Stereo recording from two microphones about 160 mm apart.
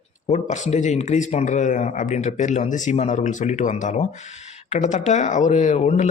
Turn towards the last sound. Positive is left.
turn(degrees=45)  # may be behind; listen again after turning